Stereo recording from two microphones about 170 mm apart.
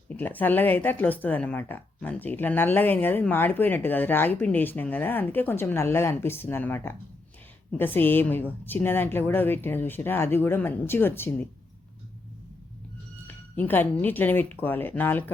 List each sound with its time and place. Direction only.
0.2 s speech: 10° left (ahead or behind)
13.2 s speech: 10° left (ahead or behind)